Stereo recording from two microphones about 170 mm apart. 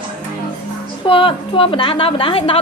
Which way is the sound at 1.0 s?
30° left (ahead or behind).